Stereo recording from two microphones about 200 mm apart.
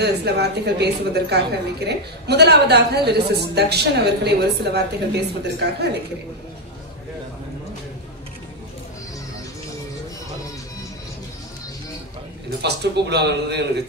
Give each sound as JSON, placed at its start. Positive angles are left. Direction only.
{"t": 0.0, "sound": "a woman's voice", "side_deg": -55}
{"t": 12.6, "sound": "a woman's voice", "side_deg": -55}